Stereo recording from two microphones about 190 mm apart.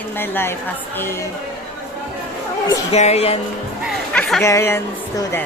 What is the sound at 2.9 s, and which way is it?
Speech, 35° left (ahead or behind).